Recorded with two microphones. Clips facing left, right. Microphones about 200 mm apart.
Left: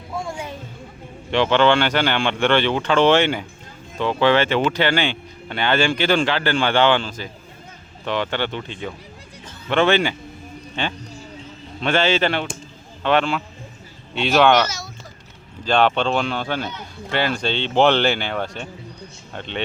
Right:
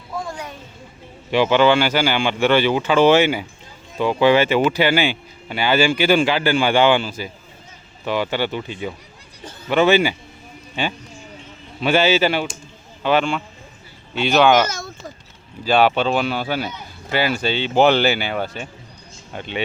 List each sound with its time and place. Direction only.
0.2 s a sound: 25° left (ahead or behind)
1.3 s speech: 10° right (ahead or behind)
14.7 s speech: 50° right (ahead or behind)
15.6 s speech: 5° right (ahead or behind)